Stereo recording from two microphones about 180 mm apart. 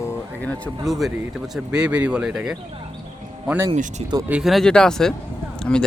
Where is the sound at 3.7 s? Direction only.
40° right (ahead or behind).